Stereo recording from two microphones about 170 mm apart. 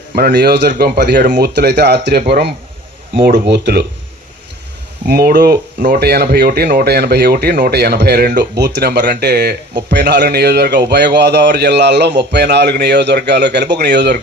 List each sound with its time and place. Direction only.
0.2 s speech: 65° right (ahead or behind)
0.7 s speech: 65° right (ahead or behind)
5.0 s speech: 65° right (ahead or behind); by 14.2 s 80° right